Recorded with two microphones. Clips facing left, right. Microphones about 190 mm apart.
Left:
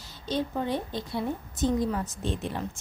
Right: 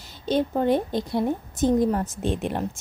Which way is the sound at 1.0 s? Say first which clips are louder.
Right 6 dB; 45° right (ahead or behind).